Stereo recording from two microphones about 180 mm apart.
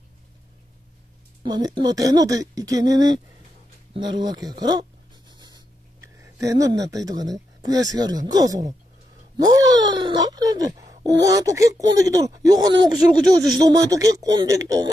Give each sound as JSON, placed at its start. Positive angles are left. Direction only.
{"t": 1.4, "sound": "speech", "side_deg": -25}
{"t": 6.3, "sound": "speech", "side_deg": -20}